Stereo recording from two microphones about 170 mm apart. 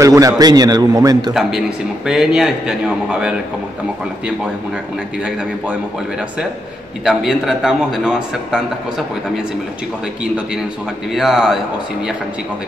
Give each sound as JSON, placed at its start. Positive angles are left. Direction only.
{"t": 0.0, "sound": "a man's voice", "side_deg": -20}
{"t": 1.3, "sound": "a man's voice", "side_deg": 0}
{"t": 7.1, "sound": "a man's voice", "side_deg": -5}
{"t": 11.1, "sound": "a man's voice", "side_deg": 0}